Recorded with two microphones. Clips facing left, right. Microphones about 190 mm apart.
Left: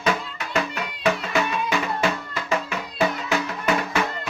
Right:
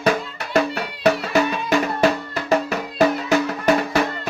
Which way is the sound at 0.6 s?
35° right (ahead or behind).